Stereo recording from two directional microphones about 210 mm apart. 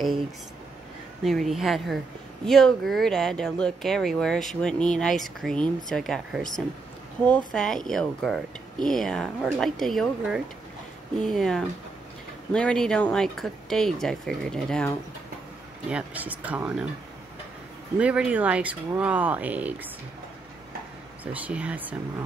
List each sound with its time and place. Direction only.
1.2 s speech: centre (ahead or behind)
15.9 s speech: 5° right (ahead or behind)
17.9 s speech: 5° right (ahead or behind)
21.2 s speech: 5° right (ahead or behind)